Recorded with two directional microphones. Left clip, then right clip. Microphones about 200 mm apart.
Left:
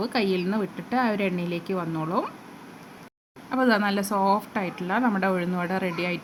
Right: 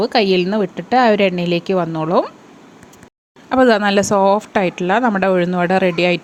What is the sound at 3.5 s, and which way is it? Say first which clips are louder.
A woman's voice: right 10 dB; 35° right (ahead or behind).